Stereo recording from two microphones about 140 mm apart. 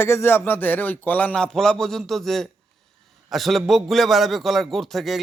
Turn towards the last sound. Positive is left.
turn(degrees=0)  # may be behind; listen again after turning